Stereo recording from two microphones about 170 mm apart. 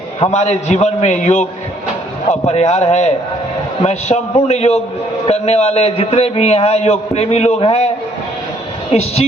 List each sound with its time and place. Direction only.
0.2 s a man's voice: 40° left (ahead or behind)
8.9 s a man's voice: 40° left (ahead or behind)